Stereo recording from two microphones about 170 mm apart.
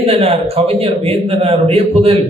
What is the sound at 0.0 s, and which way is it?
A man's voice, 35° right (ahead or behind).